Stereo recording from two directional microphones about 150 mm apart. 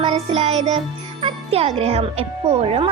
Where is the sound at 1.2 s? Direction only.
35° right (ahead or behind).